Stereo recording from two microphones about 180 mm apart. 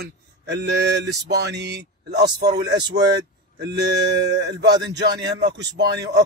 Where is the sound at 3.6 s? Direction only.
70° right (ahead or behind).